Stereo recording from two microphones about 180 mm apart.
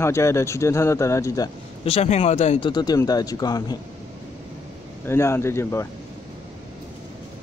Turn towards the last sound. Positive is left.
turn(degrees=15)  # may be behind; listen again after turning